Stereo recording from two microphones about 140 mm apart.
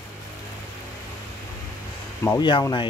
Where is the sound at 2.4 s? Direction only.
35° left (ahead or behind).